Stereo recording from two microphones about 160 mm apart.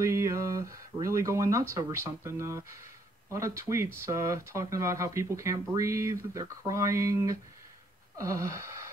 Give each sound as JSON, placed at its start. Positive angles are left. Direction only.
{"t": 0.0, "sound": "speech", "side_deg": -20}